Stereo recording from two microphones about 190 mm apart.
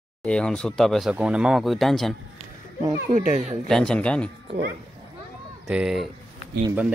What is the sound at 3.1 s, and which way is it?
Speech, 40° right (ahead or behind).